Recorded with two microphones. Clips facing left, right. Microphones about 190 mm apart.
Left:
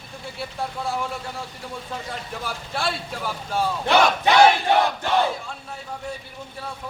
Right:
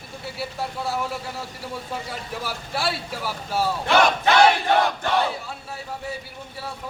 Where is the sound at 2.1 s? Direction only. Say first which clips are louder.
Even; 5° right (ahead or behind).